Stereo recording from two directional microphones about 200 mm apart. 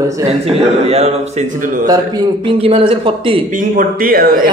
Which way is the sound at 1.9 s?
25° right (ahead or behind).